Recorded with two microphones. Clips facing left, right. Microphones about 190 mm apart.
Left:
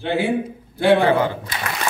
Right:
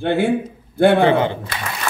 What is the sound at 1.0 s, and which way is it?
Speech, 25° right (ahead or behind).